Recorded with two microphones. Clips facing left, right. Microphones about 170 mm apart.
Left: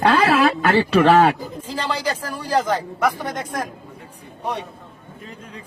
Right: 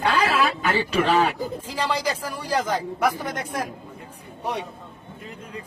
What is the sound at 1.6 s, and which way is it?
A man's voice, 10° right (ahead or behind).